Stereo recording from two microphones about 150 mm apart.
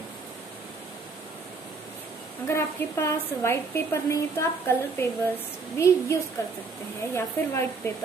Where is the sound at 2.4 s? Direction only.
15° left (ahead or behind).